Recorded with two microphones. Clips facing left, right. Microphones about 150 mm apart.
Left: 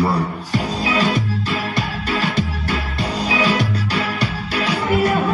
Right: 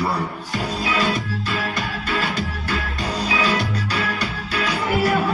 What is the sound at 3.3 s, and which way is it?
Music, 35° left (ahead or behind).